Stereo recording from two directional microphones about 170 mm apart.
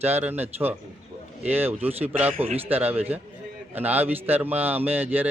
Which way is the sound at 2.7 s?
10° right (ahead or behind).